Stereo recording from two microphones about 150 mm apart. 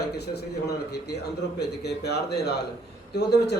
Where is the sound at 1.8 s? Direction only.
90° left.